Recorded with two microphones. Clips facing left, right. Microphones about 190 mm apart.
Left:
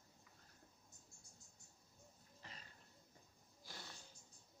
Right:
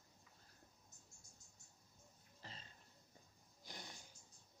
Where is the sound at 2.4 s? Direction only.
30° right (ahead or behind).